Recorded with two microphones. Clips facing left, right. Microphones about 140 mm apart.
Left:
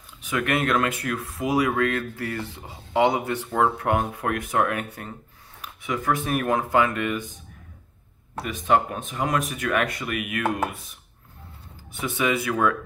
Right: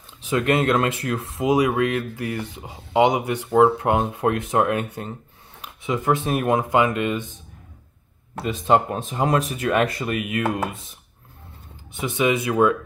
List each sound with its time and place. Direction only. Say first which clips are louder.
0.2 s speech: right 4 dB; 25° right (ahead or behind)
8.4 s speech: right 3 dB; 30° right (ahead or behind)
11.9 s speech: right 3 dB; 20° right (ahead or behind)